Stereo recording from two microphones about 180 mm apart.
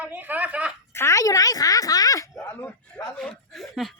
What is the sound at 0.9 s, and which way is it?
A woman's voice, 15° left (ahead or behind).